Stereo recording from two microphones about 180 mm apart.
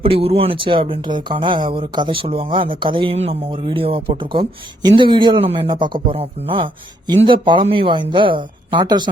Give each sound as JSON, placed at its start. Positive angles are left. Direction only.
{"t": 0.0, "sound": "speech", "side_deg": -30}